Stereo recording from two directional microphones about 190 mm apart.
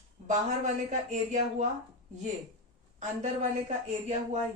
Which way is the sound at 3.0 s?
35° right (ahead or behind).